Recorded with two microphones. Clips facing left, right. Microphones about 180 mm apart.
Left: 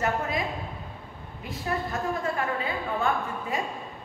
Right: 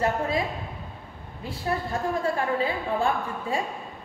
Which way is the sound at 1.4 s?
30° right (ahead or behind).